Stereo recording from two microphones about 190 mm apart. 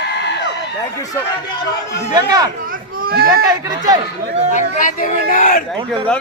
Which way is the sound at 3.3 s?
20° right (ahead or behind).